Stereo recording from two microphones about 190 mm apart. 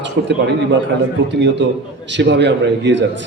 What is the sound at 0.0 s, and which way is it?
A man's voice, 65° right (ahead or behind).